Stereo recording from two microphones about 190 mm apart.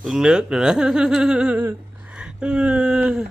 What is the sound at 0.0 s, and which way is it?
Speech, centre (ahead or behind).